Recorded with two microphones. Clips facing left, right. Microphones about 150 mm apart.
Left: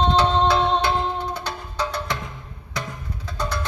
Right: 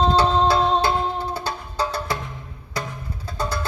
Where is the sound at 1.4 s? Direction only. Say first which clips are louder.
Right 2 dB; 30° right (ahead or behind).